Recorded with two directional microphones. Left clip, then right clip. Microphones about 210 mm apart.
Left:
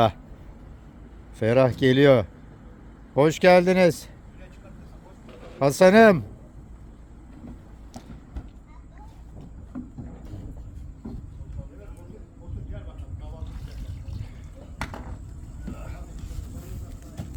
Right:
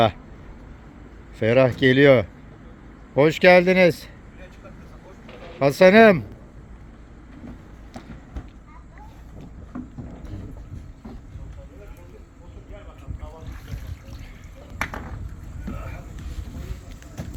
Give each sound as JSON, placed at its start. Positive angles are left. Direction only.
{"t": 1.4, "sound": "speech", "side_deg": 15}
{"t": 5.5, "sound": "speech", "side_deg": 15}
{"t": 9.7, "sound": "boat", "side_deg": 5}